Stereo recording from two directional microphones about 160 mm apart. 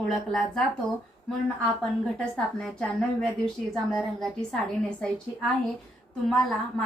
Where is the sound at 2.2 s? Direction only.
5° left (ahead or behind).